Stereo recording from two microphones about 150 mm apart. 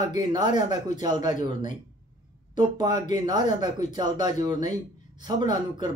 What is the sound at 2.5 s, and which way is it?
Speech, 30° right (ahead or behind).